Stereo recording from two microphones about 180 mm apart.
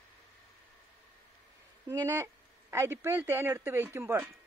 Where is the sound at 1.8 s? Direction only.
15° right (ahead or behind).